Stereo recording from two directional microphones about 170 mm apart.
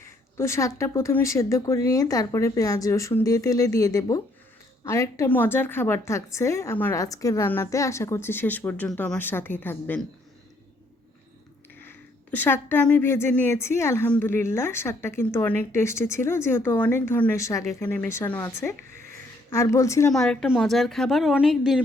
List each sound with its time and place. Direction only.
0.0 s a woman's voice: 15° left (ahead or behind)
11.8 s a woman's voice: 10° left (ahead or behind)
20.1 s a woman's voice: 5° left (ahead or behind)